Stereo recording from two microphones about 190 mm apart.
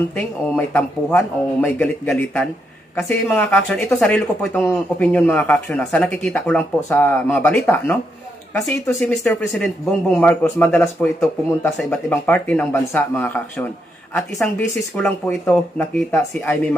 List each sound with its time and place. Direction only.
0.1 s speech: 10° left (ahead or behind)
15.0 s speech: 10° left (ahead or behind)